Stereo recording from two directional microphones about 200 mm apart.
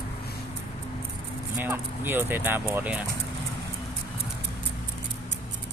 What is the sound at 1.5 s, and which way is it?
Speech, 10° right (ahead or behind).